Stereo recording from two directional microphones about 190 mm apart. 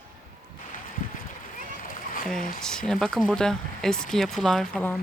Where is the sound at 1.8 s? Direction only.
45° left (ahead or behind).